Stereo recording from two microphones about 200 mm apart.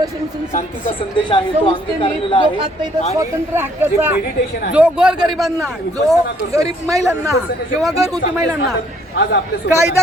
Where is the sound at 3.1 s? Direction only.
10° right (ahead or behind).